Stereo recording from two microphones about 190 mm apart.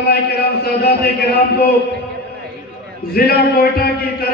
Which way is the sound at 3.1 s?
50° left (ahead or behind).